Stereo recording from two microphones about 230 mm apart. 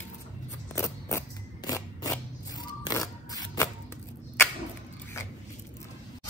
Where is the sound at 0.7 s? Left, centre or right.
Centre.